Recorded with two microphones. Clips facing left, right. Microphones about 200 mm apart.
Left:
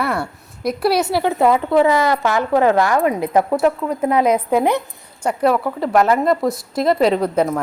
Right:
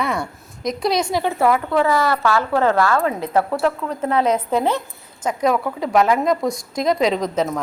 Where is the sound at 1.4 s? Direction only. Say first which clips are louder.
Left 4 dB; 20° left (ahead or behind).